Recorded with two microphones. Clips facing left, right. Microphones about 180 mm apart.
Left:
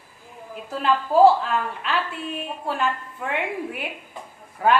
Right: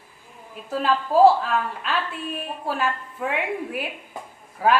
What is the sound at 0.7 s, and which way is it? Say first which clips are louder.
A woman's voice: even; centre (ahead or behind).